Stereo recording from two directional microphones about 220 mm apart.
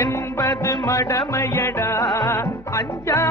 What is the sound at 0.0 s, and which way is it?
Music, 15° left (ahead or behind).